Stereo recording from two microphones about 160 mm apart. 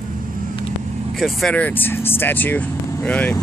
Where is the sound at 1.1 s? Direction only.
Centre (ahead or behind).